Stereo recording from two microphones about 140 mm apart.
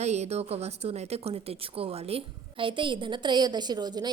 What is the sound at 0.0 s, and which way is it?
A woman's voice, 50° right (ahead or behind).